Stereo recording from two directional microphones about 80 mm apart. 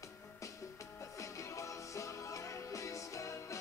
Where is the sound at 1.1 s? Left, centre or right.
Left.